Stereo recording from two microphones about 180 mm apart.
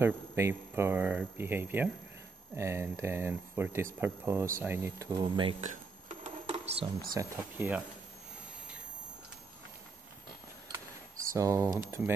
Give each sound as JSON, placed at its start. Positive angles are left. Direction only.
{"t": 0.0, "sound": "speech", "side_deg": -15}
{"t": 5.6, "sound": "a sound", "side_deg": -35}
{"t": 7.2, "sound": "speech", "side_deg": -10}
{"t": 11.3, "sound": "speech", "side_deg": -15}